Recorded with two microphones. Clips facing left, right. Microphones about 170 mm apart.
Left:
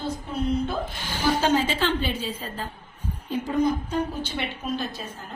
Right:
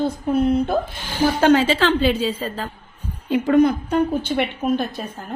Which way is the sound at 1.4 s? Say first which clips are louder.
Right 11 dB; 80° right.